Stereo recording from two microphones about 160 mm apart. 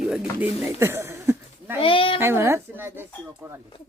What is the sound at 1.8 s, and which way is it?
Speech, 35° left (ahead or behind).